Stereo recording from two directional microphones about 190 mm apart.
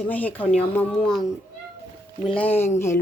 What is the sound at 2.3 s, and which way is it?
Speech, 10° left (ahead or behind).